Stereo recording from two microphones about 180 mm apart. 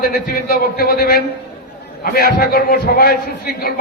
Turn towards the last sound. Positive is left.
turn(degrees=60)  # may be behind; listen again after turning